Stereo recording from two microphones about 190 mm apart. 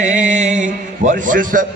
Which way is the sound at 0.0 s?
40° right (ahead or behind).